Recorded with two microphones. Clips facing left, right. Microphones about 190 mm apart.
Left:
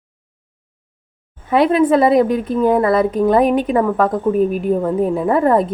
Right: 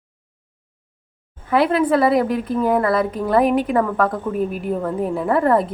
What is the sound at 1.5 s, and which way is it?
A woman's voice, 20° left (ahead or behind).